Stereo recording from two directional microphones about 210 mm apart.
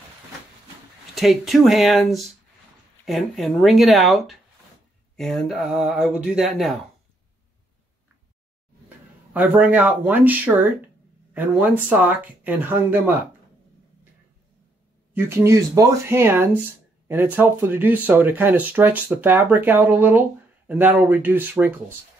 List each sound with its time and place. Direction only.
1.1 s speech: centre (ahead or behind)
8.8 s speech: 10° right (ahead or behind)
15.1 s speech: 10° right (ahead or behind)